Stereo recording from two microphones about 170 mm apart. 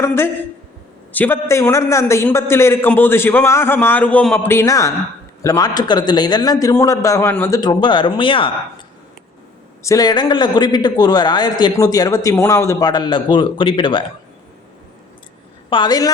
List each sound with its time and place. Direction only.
0.0 s a man's voice: 15° left (ahead or behind); by 8.5 s 30° left (ahead or behind)
9.8 s a man's voice: 20° left (ahead or behind)
15.7 s a man's voice: 25° left (ahead or behind)